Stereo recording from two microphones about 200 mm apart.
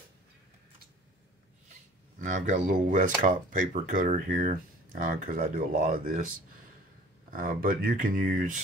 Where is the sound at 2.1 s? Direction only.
35° right (ahead or behind).